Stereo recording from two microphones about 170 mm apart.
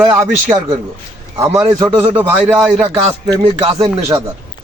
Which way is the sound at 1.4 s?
15° right (ahead or behind).